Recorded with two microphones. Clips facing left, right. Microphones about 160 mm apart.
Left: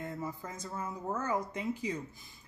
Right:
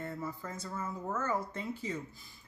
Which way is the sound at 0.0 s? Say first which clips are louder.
Even; 15° left (ahead or behind).